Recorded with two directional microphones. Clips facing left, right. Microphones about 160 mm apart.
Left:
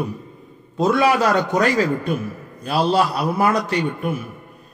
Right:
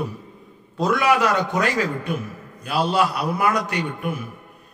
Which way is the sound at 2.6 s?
35° left (ahead or behind).